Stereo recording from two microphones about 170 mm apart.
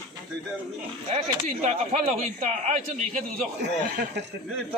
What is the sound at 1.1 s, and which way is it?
Speech, 40° right (ahead or behind).